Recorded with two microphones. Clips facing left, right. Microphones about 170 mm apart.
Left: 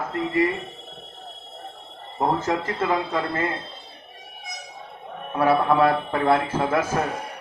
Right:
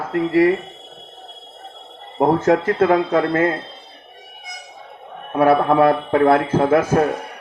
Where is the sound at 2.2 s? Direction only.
60° right (ahead or behind).